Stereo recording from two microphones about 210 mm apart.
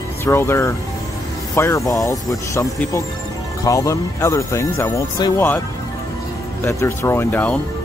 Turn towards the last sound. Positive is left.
turn(degrees=5)  # may be behind; listen again after turning